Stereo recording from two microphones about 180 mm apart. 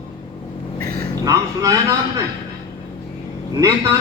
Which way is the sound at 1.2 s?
20° right (ahead or behind).